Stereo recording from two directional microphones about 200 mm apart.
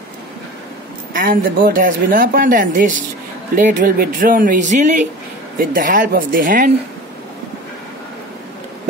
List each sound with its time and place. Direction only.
1.1 s speech: 45° right (ahead or behind)